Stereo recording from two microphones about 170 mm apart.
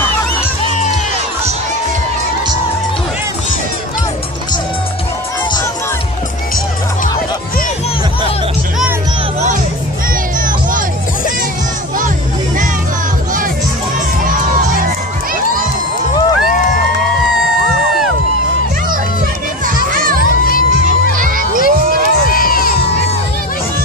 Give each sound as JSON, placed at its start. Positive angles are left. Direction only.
{"t": 14.4, "sound": "crowd", "side_deg": -50}
{"t": 20.8, "sound": "music", "side_deg": -55}
{"t": 22.3, "sound": "crowd", "side_deg": 60}